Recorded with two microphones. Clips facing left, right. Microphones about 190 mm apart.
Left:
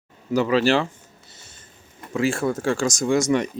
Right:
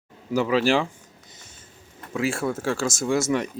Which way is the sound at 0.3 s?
10° right (ahead or behind).